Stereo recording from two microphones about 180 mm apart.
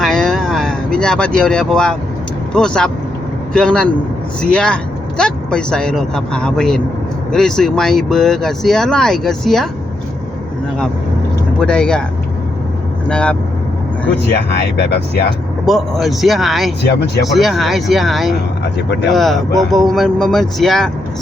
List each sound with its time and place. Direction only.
0.0 s vehicle: 5° left (ahead or behind)
2.5 s speech: 5° left (ahead or behind)
11.6 s speech: 5° left (ahead or behind)
13.1 s speech: 5° left (ahead or behind)
14.5 s speech: 65° left (ahead or behind)
15.6 s speech: centre (ahead or behind)